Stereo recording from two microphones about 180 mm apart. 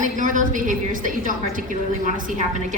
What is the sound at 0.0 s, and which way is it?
A woman's voice, 45° right (ahead or behind).